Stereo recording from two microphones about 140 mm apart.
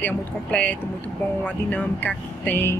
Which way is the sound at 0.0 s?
10° left (ahead or behind).